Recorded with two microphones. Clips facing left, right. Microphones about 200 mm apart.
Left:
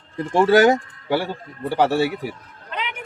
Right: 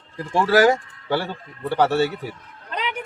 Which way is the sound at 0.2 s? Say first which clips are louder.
Left 3 dB; 20° left (ahead or behind).